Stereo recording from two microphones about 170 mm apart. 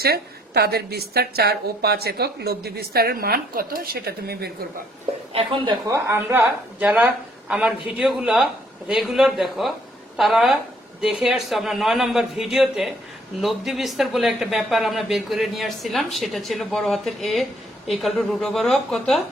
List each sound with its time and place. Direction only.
0.0 s a woman's voice: 65° right (ahead or behind)
5.3 s a woman's voice: 35° right (ahead or behind)
5.9 s a woman's voice: 15° right (ahead or behind); by 19.2 s 5° left (ahead or behind)